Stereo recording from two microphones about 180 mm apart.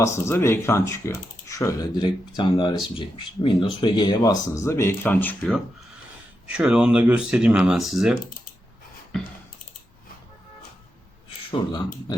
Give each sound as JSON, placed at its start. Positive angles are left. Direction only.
{"t": 0.0, "sound": "speech", "side_deg": 15}
{"t": 6.5, "sound": "speech", "side_deg": -5}
{"t": 11.5, "sound": "speech", "side_deg": 25}